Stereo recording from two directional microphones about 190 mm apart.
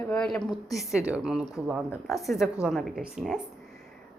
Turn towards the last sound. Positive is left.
turn(degrees=-5)  # may be behind; listen again after turning